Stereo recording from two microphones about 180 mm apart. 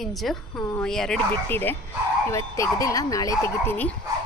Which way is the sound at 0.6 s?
15° left (ahead or behind).